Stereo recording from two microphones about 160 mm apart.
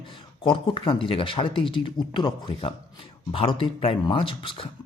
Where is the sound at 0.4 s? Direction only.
30° left (ahead or behind).